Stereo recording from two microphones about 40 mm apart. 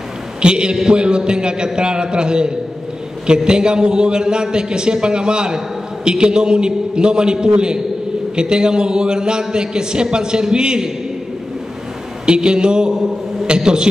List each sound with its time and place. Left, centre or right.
0.4 s a man's voice: right
12.3 s a man's voice: right